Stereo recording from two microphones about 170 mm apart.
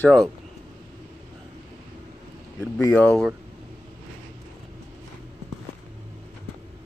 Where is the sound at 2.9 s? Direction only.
5° left (ahead or behind).